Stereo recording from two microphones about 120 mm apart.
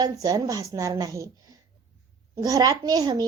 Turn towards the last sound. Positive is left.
turn(degrees=-35)  # may be behind; listen again after turning